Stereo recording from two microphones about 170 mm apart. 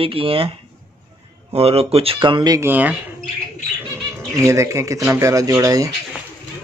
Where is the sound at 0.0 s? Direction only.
30° right (ahead or behind).